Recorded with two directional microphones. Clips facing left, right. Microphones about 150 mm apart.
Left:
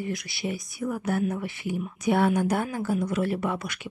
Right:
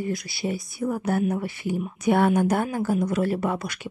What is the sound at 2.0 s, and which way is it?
Speech, 50° right (ahead or behind).